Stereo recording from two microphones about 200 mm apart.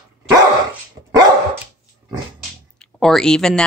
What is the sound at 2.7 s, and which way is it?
Speech, centre (ahead or behind).